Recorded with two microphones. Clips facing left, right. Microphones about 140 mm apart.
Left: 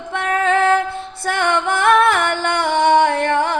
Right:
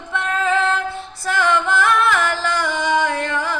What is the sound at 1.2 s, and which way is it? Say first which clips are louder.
Female singing: even; 60° left (ahead or behind).